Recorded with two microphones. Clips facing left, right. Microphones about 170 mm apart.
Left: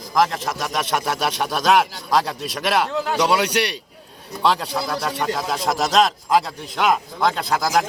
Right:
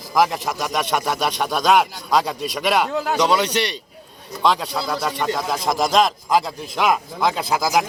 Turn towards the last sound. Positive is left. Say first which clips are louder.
# even
turn(degrees=-5)  # may be behind; listen again after turning